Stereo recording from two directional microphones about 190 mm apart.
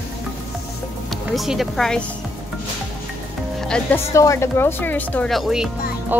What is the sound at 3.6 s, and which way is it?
Speech, 5° left (ahead or behind).